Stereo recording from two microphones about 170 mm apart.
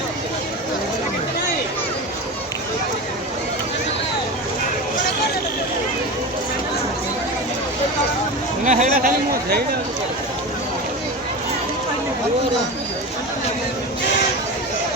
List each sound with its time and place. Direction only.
8.6 s speech: 45° right (ahead or behind)